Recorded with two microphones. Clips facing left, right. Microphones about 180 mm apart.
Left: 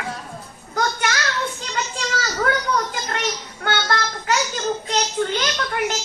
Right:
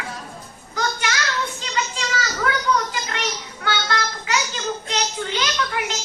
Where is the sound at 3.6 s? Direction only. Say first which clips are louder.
Left 2 dB; 50° left (ahead or behind).